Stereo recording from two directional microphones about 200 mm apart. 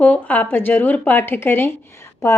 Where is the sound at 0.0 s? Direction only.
10° left (ahead or behind).